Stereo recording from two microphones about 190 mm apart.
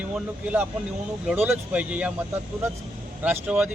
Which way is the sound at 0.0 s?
5° right (ahead or behind).